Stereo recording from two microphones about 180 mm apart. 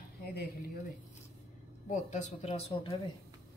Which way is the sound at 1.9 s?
40° left (ahead or behind).